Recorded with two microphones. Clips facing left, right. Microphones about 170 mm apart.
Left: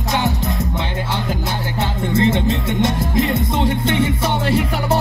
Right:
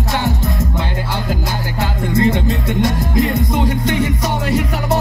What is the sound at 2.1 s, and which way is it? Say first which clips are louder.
Music: right 1 dB; 25° left (ahead or behind).